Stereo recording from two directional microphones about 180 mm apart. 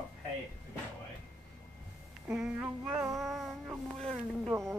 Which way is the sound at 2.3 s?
5° right (ahead or behind).